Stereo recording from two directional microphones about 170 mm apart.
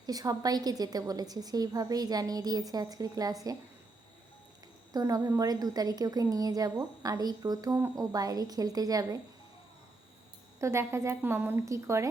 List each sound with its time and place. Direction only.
0.0 s a woman's voice: 20° right (ahead or behind)
4.9 s a woman's voice: 20° right (ahead or behind)
10.6 s a woman's voice: 15° right (ahead or behind)